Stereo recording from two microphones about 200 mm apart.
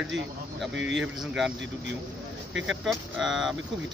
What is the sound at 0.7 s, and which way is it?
Speech, 65° right (ahead or behind).